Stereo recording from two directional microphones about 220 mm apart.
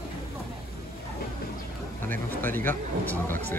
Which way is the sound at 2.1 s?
10° left (ahead or behind).